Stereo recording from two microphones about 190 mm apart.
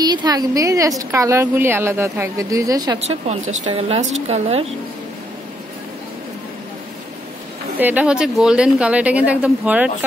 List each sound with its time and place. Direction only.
0.0 s a woman's voice: 20° right (ahead or behind)
3.1 s speech: 35° right (ahead or behind)
7.8 s a woman's voice: 5° right (ahead or behind)